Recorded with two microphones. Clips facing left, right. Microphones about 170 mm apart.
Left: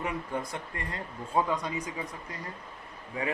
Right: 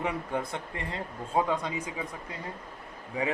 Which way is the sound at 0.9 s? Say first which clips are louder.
Right 2 dB; 25° right (ahead or behind).